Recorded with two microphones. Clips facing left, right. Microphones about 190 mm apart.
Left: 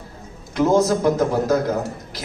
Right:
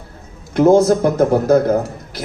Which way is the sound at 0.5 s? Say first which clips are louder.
Right 6 dB; 55° right (ahead or behind).